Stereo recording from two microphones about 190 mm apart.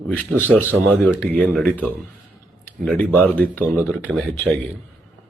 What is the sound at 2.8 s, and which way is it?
Speech, 10° left (ahead or behind).